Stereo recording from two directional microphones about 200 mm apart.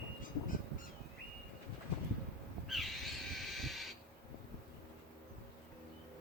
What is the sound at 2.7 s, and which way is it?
Crow, centre (ahead or behind).